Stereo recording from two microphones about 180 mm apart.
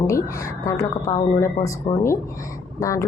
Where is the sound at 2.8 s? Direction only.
15° left (ahead or behind).